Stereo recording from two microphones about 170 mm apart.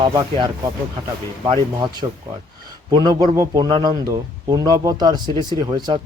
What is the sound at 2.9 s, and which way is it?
Speech, 25° right (ahead or behind).